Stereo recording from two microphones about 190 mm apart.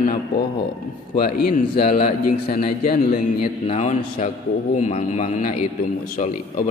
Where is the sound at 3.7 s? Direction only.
35° left (ahead or behind).